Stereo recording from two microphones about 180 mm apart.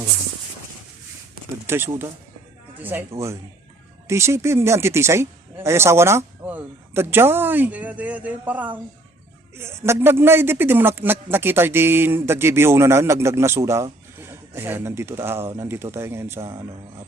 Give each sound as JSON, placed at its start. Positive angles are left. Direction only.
{"t": 1.6, "sound": "speech", "side_deg": -15}